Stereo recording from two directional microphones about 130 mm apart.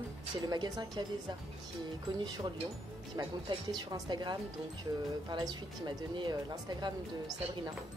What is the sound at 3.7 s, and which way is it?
Speech, 30° right (ahead or behind).